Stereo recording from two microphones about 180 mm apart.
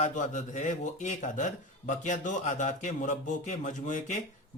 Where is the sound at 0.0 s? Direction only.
45° left (ahead or behind).